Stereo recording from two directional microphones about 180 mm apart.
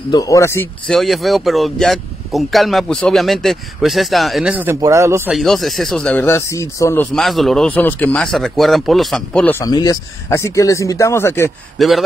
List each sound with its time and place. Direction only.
0.1 s speech: 20° left (ahead or behind)
0.9 s speech: centre (ahead or behind)
5.3 s speech: centre (ahead or behind); by 7.1 s 15° left (ahead or behind)
7.1 s speech: centre (ahead or behind)
9.6 s speech: 20° left (ahead or behind)
11.8 s speech: centre (ahead or behind)